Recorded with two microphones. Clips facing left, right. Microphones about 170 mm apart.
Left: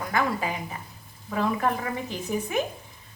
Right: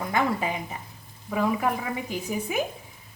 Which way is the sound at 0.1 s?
20° right (ahead or behind).